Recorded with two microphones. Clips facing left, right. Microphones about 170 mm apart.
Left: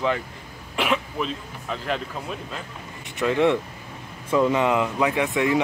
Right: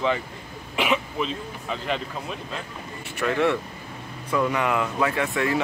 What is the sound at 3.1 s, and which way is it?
Speech, 20° left (ahead or behind).